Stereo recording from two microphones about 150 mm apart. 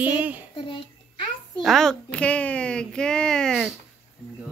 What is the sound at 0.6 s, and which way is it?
Speech, 35° left (ahead or behind).